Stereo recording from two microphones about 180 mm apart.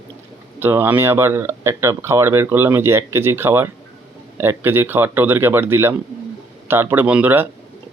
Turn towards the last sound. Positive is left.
turn(degrees=-10)  # may be behind; listen again after turning